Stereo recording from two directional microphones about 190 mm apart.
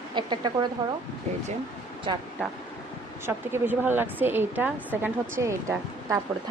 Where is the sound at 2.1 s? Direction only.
25° right (ahead or behind).